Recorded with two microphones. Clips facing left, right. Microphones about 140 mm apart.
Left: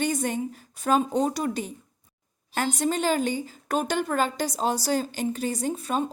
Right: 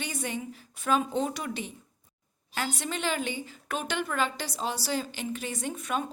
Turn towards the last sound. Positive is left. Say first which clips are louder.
# left 5 dB
turn(degrees=35)  # may be behind; listen again after turning